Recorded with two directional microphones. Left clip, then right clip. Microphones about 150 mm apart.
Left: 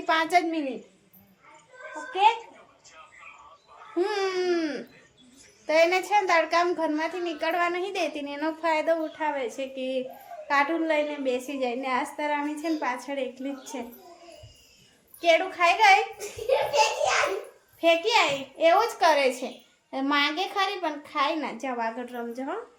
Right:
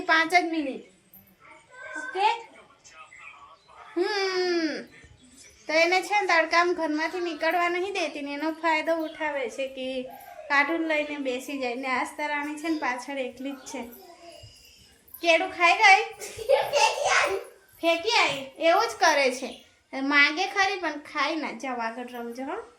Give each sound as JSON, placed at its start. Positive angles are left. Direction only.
{"t": 0.0, "sound": "a woman's voice", "side_deg": 10}
{"t": 3.9, "sound": "a woman's voice", "side_deg": 15}
{"t": 15.2, "sound": "a woman's voice", "side_deg": 15}
{"t": 17.7, "sound": "a child's voice", "side_deg": 20}